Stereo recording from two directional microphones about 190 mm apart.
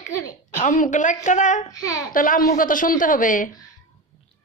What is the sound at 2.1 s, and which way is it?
A woman's voice, 45° left (ahead or behind).